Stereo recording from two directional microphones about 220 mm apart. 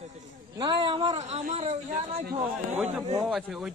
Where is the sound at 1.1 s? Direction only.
30° right (ahead or behind).